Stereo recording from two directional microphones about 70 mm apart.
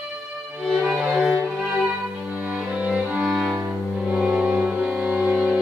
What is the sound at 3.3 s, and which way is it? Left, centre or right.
Music, centre.